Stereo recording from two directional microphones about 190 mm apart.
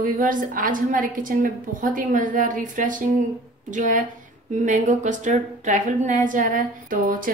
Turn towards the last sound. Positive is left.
turn(degrees=-45)  # may be behind; listen again after turning